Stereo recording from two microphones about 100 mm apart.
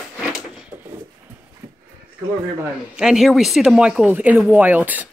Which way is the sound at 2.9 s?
5° right (ahead or behind).